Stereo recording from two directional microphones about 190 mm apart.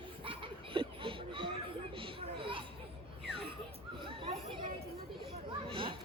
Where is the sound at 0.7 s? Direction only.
25° right (ahead or behind).